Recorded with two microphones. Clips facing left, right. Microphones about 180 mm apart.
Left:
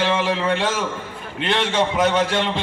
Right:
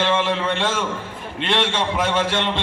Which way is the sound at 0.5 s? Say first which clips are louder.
Left 1 dB; 25° right (ahead or behind).